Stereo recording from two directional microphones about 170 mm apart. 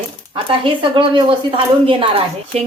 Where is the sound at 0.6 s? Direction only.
30° right (ahead or behind).